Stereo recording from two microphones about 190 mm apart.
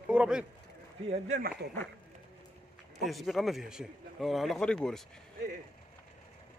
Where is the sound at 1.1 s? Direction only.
35° right (ahead or behind).